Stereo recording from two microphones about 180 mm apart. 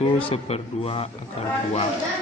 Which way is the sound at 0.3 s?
30° left (ahead or behind).